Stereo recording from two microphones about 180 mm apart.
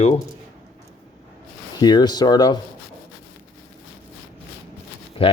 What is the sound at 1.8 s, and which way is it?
Speech, 25° left (ahead or behind).